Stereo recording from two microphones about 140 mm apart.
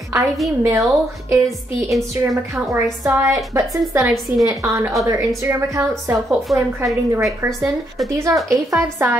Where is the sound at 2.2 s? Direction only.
20° right (ahead or behind).